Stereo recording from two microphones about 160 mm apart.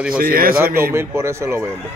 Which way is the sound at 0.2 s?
65° right (ahead or behind).